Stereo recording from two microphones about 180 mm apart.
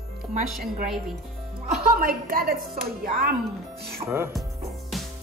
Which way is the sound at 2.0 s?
55° right (ahead or behind).